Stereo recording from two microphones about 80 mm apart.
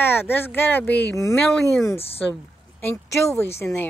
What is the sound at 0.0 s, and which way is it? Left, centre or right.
Speech, left.